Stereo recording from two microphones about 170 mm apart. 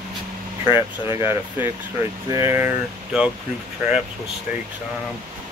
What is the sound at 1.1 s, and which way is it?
Speech, 15° right (ahead or behind).